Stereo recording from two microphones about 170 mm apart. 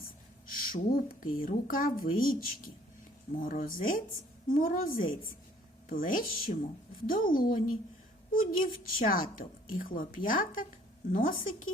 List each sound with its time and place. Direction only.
0.5 s speech: 60° left (ahead or behind)